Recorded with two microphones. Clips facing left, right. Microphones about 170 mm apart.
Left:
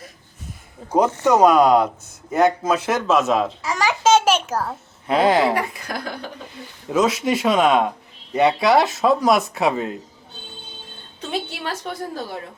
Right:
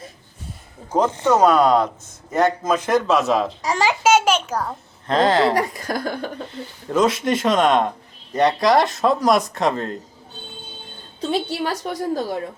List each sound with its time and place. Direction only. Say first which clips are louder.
0.9 s a child's voice: left 1 dB; 10° left (ahead or behind)
3.6 s a woman's voice: right 3 dB; 35° right (ahead or behind)
3.8 s a child's voice: left 1 dB; 10° right (ahead or behind)
4.3 s a child's voice: left 1 dB; 5° left (ahead or behind)
5.5 s speech: right 3 dB; 40° right (ahead or behind)
6.8 s a man's voice: even; 5° left (ahead or behind)
11.3 s a woman's voice: right 4 dB; 35° right (ahead or behind)